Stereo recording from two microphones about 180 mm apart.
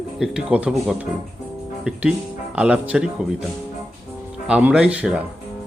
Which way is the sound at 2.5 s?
5° right (ahead or behind).